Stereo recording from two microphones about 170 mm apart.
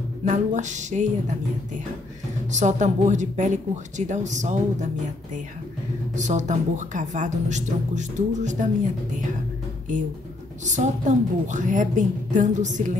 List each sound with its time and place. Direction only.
0.2 s speech: 45° right (ahead or behind)
2.5 s speech: 45° right (ahead or behind)
6.1 s speech: 45° right (ahead or behind)
10.6 s speech: 45° right (ahead or behind)